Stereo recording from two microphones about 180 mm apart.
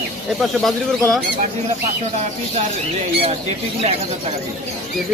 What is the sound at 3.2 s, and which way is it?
Speech, 35° right (ahead or behind).